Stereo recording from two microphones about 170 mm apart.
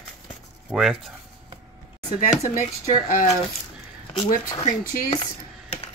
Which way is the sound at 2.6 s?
45° left (ahead or behind).